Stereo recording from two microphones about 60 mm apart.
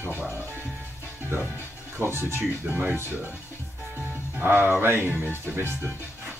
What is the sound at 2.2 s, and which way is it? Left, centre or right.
Speech, right.